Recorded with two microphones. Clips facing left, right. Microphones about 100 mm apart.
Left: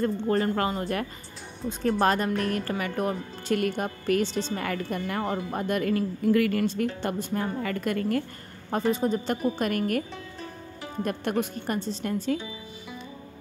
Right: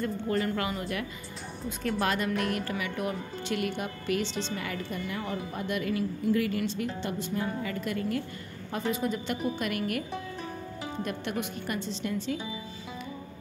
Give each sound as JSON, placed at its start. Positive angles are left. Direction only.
{"t": 0.3, "sound": "a woman's voice", "side_deg": 35}
{"t": 8.7, "sound": "a woman's voice", "side_deg": 35}
{"t": 11.1, "sound": "speech", "side_deg": 45}